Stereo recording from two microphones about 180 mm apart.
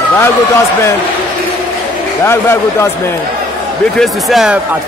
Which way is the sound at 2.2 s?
15° left (ahead or behind).